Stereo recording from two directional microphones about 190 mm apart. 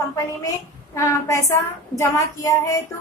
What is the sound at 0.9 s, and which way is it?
Child singing, 15° left (ahead or behind).